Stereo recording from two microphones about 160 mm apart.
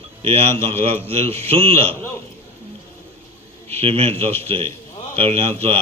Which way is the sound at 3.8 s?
35° right (ahead or behind).